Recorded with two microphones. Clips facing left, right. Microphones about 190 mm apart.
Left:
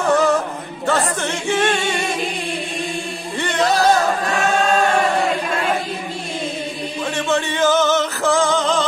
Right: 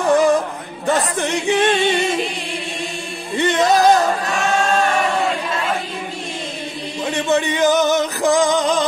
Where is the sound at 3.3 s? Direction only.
20° right (ahead or behind).